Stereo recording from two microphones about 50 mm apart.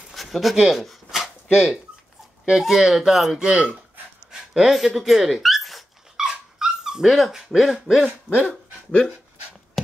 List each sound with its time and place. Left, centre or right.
0.1 s dog: centre
1.5 s speech: centre
4.3 s dog: centre
6.2 s dog: centre
7.1 s speech: centre
8.5 s speech: centre